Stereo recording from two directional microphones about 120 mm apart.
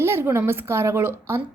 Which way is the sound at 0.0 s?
20° right (ahead or behind).